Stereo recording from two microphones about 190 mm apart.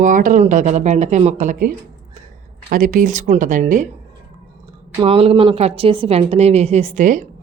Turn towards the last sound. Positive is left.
turn(degrees=-40)  # may be behind; listen again after turning